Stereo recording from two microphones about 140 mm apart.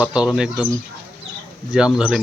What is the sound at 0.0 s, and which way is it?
Speech, 5° right (ahead or behind).